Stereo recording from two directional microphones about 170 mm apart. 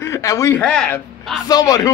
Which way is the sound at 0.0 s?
15° left (ahead or behind).